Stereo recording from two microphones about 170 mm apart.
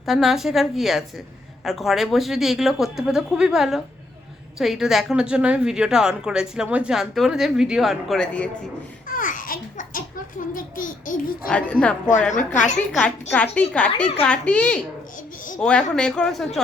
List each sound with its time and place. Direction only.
0.0 s a woman's voice: centre (ahead or behind)
9.0 s babbling: 55° left (ahead or behind)
11.4 s a woman's voice: 5° left (ahead or behind)
12.5 s babbling: 45° left (ahead or behind)
12.9 s a woman's voice: 5° left (ahead or behind)